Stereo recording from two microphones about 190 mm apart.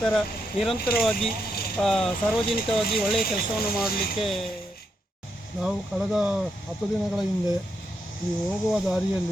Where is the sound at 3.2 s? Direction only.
50° left (ahead or behind).